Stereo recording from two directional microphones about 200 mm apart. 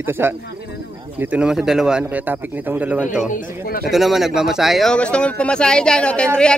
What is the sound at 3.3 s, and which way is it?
Speech, 50° left (ahead or behind).